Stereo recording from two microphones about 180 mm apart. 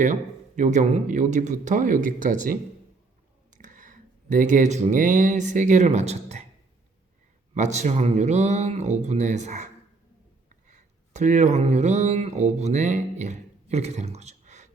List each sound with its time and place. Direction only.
0.0 s speech: 45° right (ahead or behind)
3.6 s speech: 45° right (ahead or behind)
7.5 s speech: 40° right (ahead or behind)
10.7 s speech: 40° right (ahead or behind)